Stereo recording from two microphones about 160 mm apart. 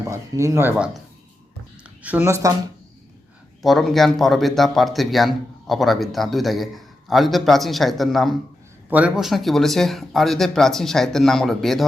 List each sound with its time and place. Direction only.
0.1 s speech: 20° right (ahead or behind)
2.0 s speech: 10° right (ahead or behind)
3.6 s a man's voice: centre (ahead or behind)